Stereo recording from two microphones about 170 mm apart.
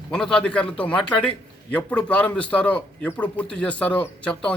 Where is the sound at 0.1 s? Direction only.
5° left (ahead or behind).